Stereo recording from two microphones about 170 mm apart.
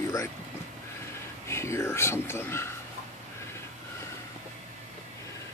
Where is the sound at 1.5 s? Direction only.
15° left (ahead or behind).